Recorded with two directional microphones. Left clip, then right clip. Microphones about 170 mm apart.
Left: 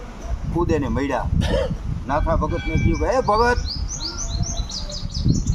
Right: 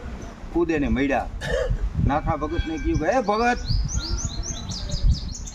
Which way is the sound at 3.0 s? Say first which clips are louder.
Left 4 dB; 25° right (ahead or behind).